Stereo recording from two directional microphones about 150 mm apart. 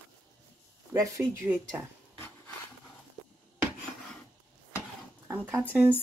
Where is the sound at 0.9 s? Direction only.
20° right (ahead or behind).